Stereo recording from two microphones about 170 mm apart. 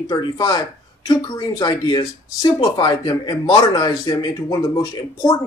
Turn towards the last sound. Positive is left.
turn(degrees=20)  # may be behind; listen again after turning